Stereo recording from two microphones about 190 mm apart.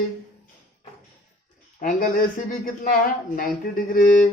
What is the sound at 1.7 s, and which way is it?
Speech, 45° left (ahead or behind).